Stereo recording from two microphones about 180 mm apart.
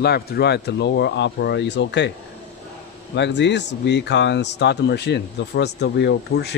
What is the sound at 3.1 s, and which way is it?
Speech, 75° left (ahead or behind).